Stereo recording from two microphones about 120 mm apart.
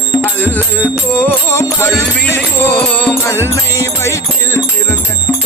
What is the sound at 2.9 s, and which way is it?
Music, 10° left (ahead or behind).